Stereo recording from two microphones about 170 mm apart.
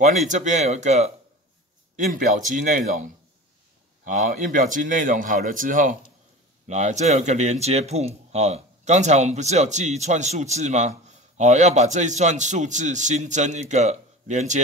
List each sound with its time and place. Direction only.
0.0 s speech: 45° right (ahead or behind)
2.1 s speech: 50° right (ahead or behind)